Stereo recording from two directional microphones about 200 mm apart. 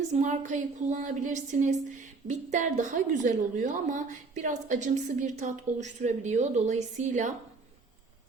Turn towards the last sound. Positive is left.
turn(degrees=-35)  # may be behind; listen again after turning